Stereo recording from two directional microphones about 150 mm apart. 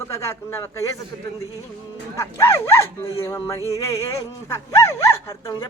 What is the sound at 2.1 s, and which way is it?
Speech, 20° left (ahead or behind).